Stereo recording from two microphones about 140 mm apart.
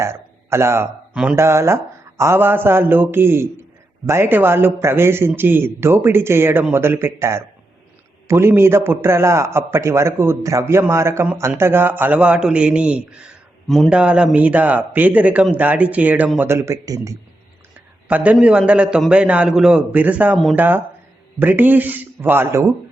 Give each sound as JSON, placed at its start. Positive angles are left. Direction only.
{"t": 0.0, "sound": "a man's voice", "side_deg": -20}
{"t": 1.1, "sound": "speech", "side_deg": -5}
{"t": 1.4, "sound": "a man's voice", "side_deg": -20}
{"t": 18.1, "sound": "a man's voice", "side_deg": -10}